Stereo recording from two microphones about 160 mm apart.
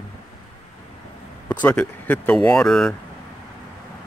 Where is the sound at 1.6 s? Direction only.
10° left (ahead or behind).